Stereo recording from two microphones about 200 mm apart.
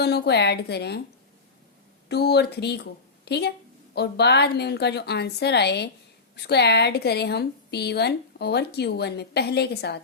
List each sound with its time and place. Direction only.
0.0 s a woman's voice: 55° left (ahead or behind)
2.0 s a woman's voice: 55° left (ahead or behind)